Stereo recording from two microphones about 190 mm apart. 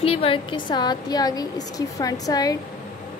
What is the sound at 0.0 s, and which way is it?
A woman's voice, 30° left (ahead or behind).